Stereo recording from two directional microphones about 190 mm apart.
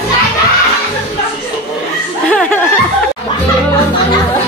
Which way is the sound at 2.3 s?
5° left (ahead or behind).